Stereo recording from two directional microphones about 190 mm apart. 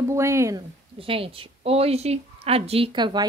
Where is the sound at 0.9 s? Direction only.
30° right (ahead or behind).